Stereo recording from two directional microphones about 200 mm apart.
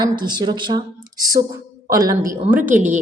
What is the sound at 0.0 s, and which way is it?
A woman's voice, 20° right (ahead or behind).